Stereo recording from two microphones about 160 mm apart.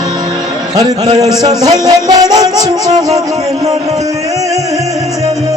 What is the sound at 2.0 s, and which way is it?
Music, 25° right (ahead or behind).